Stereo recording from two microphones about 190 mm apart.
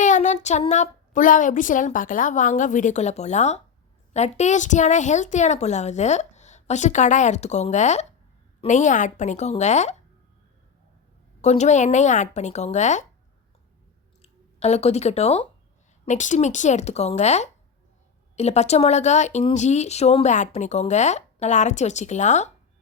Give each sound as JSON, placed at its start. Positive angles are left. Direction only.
{"t": 0.0, "sound": "speech", "side_deg": 40}
{"t": 11.4, "sound": "speech", "side_deg": 35}
{"t": 14.2, "sound": "speech", "side_deg": 35}